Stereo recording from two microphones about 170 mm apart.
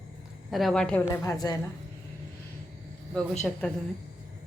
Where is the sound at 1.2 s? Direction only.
20° left (ahead or behind).